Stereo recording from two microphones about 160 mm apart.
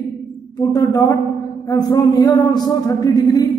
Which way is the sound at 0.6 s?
20° left (ahead or behind).